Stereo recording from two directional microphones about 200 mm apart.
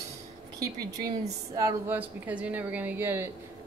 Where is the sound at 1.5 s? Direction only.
15° right (ahead or behind).